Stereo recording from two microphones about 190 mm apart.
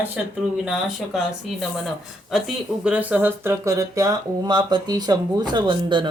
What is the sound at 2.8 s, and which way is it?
Speech, 5° right (ahead or behind).